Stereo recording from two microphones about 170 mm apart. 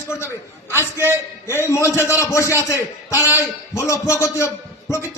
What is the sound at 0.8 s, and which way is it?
Speech, 15° right (ahead or behind).